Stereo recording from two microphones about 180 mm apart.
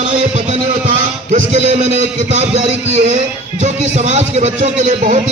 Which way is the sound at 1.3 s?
40° right (ahead or behind).